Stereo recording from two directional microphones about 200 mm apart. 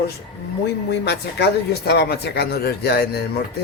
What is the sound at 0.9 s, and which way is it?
Speech, 55° left (ahead or behind).